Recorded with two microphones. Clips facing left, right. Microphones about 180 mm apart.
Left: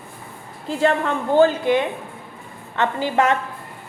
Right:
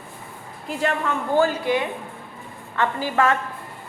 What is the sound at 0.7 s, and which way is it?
A woman's voice, 30° left (ahead or behind).